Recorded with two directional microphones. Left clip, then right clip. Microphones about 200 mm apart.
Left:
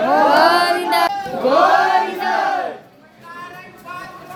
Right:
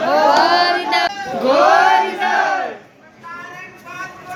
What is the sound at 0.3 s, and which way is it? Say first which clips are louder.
Child singing: right 1 dB; 65° left (ahead or behind).